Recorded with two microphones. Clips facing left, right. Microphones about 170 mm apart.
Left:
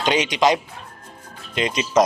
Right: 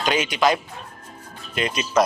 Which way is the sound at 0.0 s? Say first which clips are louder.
Left 2 dB; 20° left (ahead or behind).